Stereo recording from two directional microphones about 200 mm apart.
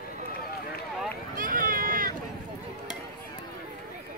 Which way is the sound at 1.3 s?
45° right (ahead or behind).